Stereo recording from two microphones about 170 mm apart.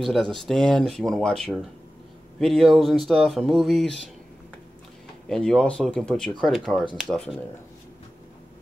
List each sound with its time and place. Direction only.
0.0 s speech: centre (ahead or behind)
5.3 s speech: 5° left (ahead or behind)